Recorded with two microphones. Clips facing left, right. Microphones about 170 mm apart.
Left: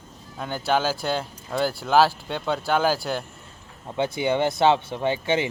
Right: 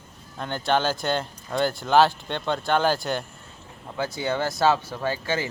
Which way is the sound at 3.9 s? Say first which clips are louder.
Left 4 dB; 20° left (ahead or behind).